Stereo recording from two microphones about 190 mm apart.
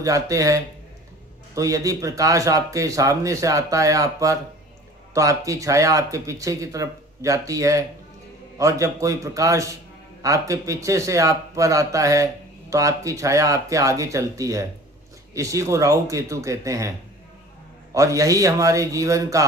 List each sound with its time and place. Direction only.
0.0 s speech: 15° right (ahead or behind)
17.9 s speech: 15° right (ahead or behind)